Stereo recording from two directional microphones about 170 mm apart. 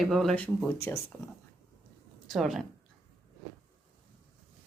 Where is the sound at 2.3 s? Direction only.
Centre (ahead or behind).